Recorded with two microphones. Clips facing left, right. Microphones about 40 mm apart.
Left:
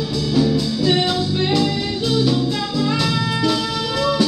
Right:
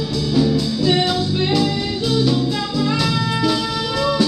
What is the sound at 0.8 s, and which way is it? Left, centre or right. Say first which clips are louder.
Music: right 1 dB; centre.